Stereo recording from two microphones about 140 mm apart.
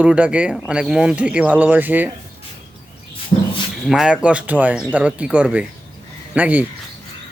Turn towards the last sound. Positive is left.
turn(degrees=-10)  # may be behind; listen again after turning